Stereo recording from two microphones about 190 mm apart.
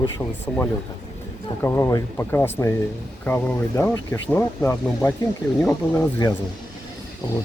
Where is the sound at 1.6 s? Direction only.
15° left (ahead or behind).